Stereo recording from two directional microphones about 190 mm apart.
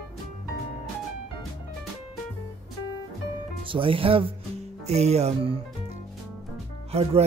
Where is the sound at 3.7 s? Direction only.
30° right (ahead or behind).